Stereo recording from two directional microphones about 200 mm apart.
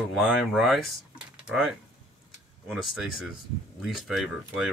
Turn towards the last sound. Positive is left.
turn(degrees=0)  # may be behind; listen again after turning